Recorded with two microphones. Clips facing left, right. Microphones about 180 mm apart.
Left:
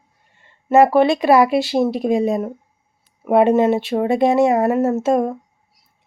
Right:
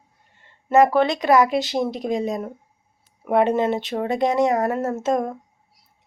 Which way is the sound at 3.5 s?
25° left (ahead or behind).